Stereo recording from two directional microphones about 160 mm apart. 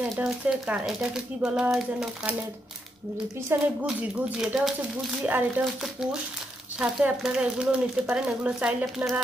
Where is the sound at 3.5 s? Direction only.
15° right (ahead or behind).